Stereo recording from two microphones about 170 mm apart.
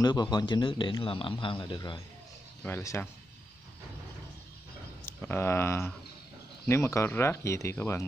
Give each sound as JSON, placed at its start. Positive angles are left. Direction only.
{"t": 0.0, "sound": "a man's voice", "side_deg": 25}
{"t": 2.6, "sound": "speech", "side_deg": 15}
{"t": 5.0, "sound": "speech", "side_deg": 15}